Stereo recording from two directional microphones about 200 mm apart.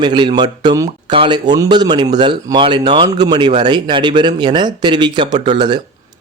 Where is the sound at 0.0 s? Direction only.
25° right (ahead or behind).